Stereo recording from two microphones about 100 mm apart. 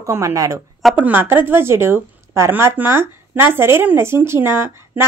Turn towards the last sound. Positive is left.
turn(degrees=-25)  # may be behind; listen again after turning